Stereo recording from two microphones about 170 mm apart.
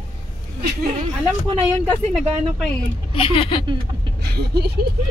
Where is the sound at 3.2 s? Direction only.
30° left (ahead or behind).